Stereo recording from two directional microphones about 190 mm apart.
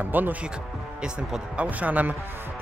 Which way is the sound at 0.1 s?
10° right (ahead or behind).